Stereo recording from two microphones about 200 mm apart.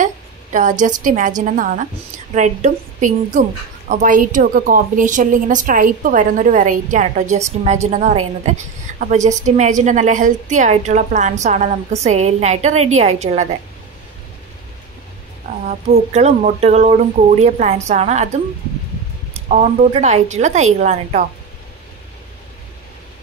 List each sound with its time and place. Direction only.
0.0 s a woman's voice: 40° right (ahead or behind)
16.1 s a woman's voice: 35° right (ahead or behind)
19.3 s a woman's voice: 35° right (ahead or behind)